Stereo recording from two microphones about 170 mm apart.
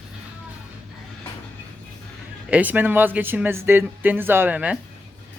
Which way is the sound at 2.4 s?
10° right (ahead or behind).